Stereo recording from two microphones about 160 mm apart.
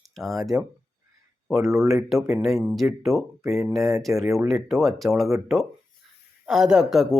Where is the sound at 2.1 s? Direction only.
Centre (ahead or behind).